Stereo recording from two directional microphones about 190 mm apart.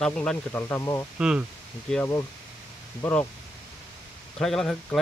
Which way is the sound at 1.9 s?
10° left (ahead or behind).